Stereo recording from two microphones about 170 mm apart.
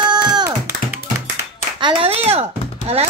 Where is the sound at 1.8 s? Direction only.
35° right (ahead or behind).